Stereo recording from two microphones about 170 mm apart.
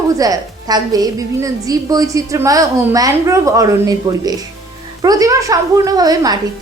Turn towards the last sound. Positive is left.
turn(degrees=-20)  # may be behind; listen again after turning